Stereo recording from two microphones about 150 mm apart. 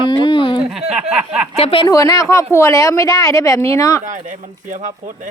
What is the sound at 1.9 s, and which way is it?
Speech, 25° left (ahead or behind).